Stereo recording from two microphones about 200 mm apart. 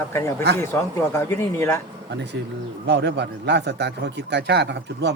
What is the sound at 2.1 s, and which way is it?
Speech, 60° right (ahead or behind).